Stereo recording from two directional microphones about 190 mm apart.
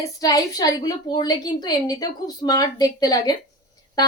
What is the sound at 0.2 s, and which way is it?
A woman's voice, 20° left (ahead or behind).